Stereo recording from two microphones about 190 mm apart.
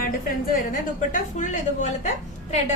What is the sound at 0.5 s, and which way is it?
A woman's voice, 45° left (ahead or behind).